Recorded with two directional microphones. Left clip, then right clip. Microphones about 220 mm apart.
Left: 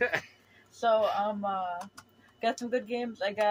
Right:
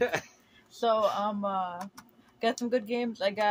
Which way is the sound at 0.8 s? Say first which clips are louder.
Even; 45° right (ahead or behind).